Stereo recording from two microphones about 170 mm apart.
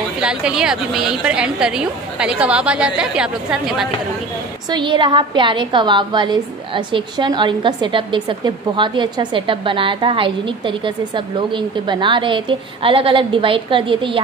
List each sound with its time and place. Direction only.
0.2 s a woman's voice: 5° right (ahead or behind)
4.6 s a woman's voice: 25° right (ahead or behind)